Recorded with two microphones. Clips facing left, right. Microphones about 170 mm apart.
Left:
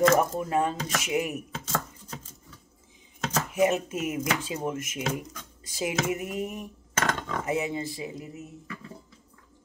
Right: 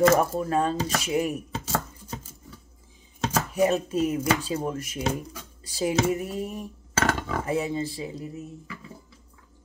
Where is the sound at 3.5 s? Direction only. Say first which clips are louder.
Right 1 dB; 35° right (ahead or behind).